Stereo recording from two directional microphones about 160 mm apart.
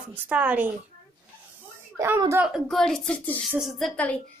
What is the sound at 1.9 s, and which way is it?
Speech, 15° right (ahead or behind).